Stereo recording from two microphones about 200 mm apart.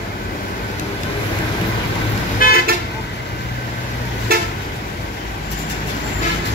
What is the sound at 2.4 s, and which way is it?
Car, 45° left (ahead or behind).